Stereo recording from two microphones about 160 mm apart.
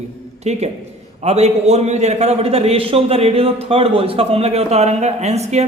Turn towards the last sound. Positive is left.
turn(degrees=-45)  # may be behind; listen again after turning